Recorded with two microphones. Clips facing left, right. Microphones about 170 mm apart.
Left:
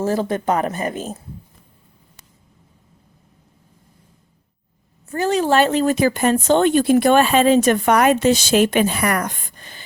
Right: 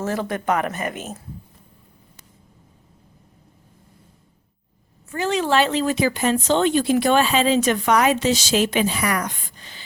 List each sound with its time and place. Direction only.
0.0 s speech: 30° left (ahead or behind)
5.0 s speech: 40° left (ahead or behind)